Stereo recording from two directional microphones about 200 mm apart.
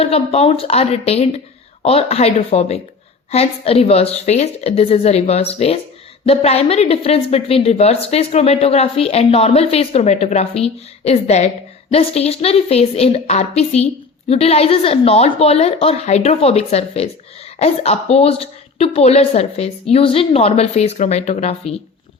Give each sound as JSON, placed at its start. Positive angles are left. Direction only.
{"t": 0.0, "sound": "a woman's voice", "side_deg": 30}